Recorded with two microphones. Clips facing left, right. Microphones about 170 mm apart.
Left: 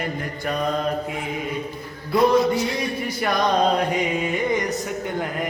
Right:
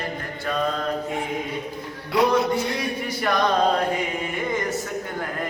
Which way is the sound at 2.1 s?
60° right (ahead or behind).